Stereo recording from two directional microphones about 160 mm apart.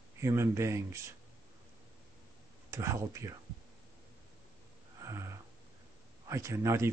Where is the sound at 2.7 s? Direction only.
20° right (ahead or behind).